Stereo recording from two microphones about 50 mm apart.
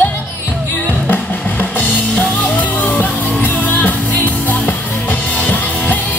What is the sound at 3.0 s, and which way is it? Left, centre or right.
Music, left.